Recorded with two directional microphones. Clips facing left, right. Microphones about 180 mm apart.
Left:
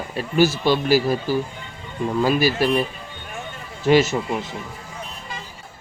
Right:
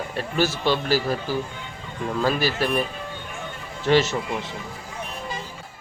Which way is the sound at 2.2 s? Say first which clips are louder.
Left 3 dB; 10° left (ahead or behind).